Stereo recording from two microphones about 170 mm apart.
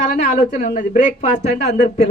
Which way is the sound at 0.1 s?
55° left (ahead or behind).